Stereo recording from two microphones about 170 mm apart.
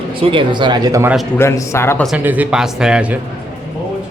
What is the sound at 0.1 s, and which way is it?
Speech, 30° right (ahead or behind).